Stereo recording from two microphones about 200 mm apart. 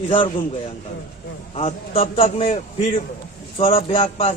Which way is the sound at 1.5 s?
30° left (ahead or behind).